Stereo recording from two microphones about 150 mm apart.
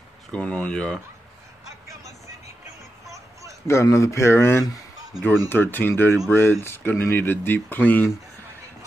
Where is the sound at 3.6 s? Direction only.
20° left (ahead or behind).